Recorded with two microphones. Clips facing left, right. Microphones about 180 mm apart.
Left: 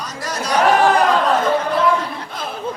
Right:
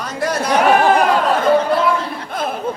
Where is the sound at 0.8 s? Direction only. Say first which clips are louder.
Right 1 dB; 10° right (ahead or behind).